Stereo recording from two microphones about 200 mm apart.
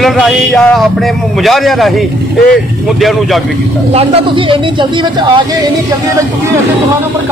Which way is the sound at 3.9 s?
30° right (ahead or behind).